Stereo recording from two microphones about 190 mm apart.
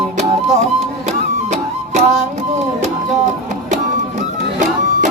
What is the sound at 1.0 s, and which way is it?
Music, 35° right (ahead or behind).